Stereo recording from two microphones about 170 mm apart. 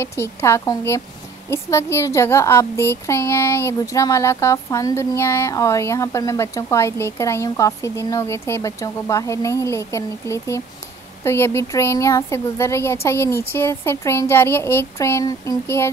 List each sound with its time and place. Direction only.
0.0 s a woman's voice: 15° left (ahead or behind)